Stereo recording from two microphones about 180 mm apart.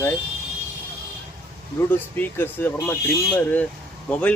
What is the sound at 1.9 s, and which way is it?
Speech, 10° left (ahead or behind).